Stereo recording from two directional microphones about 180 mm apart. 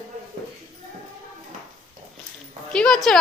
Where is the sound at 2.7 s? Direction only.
5° left (ahead or behind).